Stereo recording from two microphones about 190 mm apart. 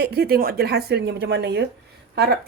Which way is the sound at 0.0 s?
55° right (ahead or behind).